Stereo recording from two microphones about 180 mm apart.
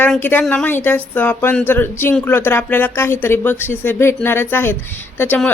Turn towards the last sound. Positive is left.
turn(degrees=10)  # may be behind; listen again after turning